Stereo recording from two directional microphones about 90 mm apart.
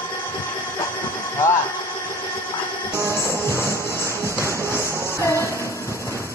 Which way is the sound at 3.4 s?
30° left (ahead or behind).